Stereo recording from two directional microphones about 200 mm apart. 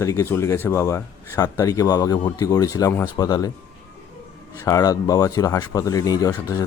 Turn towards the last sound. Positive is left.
turn(degrees=15)  # may be behind; listen again after turning